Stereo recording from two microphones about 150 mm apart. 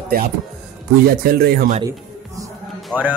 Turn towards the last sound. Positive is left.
turn(degrees=-10)  # may be behind; listen again after turning